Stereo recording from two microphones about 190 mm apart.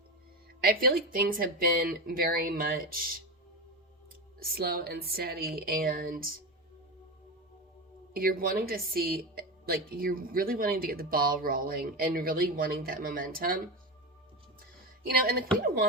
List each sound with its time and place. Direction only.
0.6 s a woman's voice: 50° right (ahead or behind)
4.4 s a woman's voice: 55° right (ahead or behind)
8.1 s a woman's voice: 50° right (ahead or behind)
15.0 s a woman's voice: 50° right (ahead or behind)